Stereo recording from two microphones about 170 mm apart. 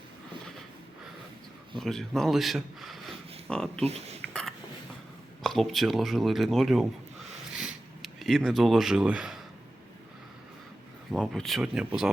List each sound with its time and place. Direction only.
1.8 s speech: centre (ahead or behind)
3.8 s speech: 35° right (ahead or behind)
5.4 s speech: centre (ahead or behind)
7.6 s a sound: centre (ahead or behind)
11.1 s speech: centre (ahead or behind)